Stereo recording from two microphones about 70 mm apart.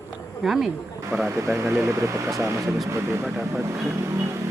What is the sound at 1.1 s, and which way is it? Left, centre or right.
Speech, right.